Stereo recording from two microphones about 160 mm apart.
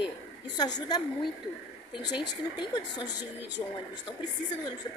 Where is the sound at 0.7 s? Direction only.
25° left (ahead or behind).